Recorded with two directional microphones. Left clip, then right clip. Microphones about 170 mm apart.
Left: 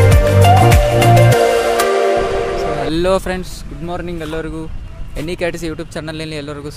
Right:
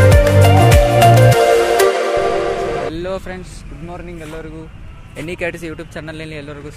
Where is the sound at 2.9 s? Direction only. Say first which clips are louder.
Left 8 dB; 50° left (ahead or behind).